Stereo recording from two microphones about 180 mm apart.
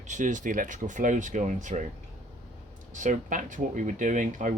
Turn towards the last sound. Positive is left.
turn(degrees=-45)  # may be behind; listen again after turning